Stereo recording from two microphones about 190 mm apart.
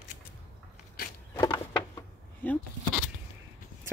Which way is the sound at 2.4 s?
10° left (ahead or behind).